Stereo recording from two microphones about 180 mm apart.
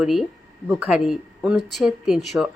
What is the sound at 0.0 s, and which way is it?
Speech, centre (ahead or behind).